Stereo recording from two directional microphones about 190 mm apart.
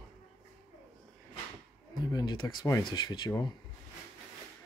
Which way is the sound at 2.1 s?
20° left (ahead or behind).